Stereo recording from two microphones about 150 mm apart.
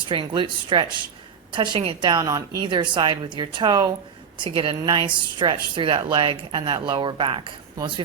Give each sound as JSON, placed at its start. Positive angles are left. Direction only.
{"t": 0.0, "sound": "speech", "side_deg": -35}